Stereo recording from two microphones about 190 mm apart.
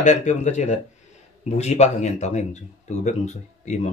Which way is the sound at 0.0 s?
40° left (ahead or behind).